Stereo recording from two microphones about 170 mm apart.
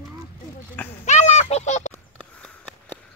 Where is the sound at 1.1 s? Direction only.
45° left (ahead or behind).